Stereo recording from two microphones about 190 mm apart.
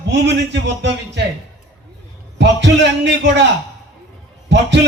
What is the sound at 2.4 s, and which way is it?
A man's voice, 70° right (ahead or behind).